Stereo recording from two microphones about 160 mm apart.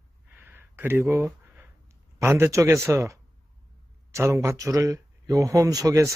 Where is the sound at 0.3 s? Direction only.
15° right (ahead or behind).